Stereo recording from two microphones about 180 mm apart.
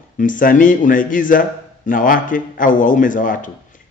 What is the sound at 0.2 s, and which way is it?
A man's voice, 50° left (ahead or behind).